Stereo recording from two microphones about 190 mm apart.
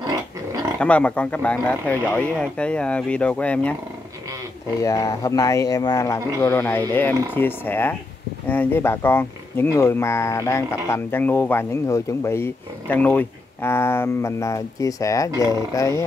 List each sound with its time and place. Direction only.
0.0 s pig: 20° right (ahead or behind)
0.7 s speech: 5° left (ahead or behind)
4.8 s speech: 15° left (ahead or behind)